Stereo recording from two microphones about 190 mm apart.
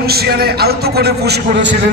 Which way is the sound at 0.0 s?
55° right (ahead or behind).